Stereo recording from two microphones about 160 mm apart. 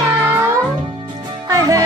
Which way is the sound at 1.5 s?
20° right (ahead or behind).